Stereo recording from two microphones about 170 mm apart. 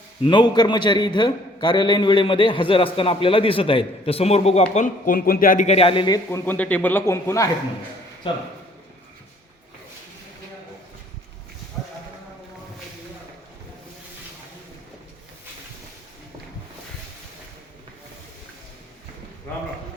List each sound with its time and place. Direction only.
0.2 s a man's voice: 25° left (ahead or behind)
4.7 s speech: 50° left (ahead or behind); by 6.1 s 30° left (ahead or behind)
6.3 s speech: 10° left (ahead or behind)